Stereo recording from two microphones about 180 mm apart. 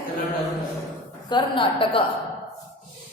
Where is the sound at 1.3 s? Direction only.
25° left (ahead or behind).